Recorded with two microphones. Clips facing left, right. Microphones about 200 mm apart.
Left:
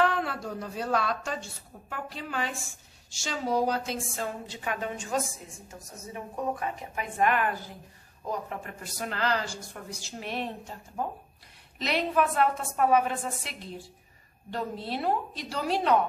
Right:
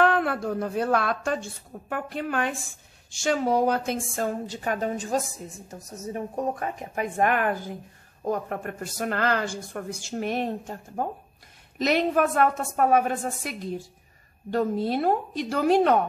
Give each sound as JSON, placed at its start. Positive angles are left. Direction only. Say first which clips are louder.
{"t": 0.0, "sound": "a woman's voice", "louder": "right 5 dB", "side_deg": -55}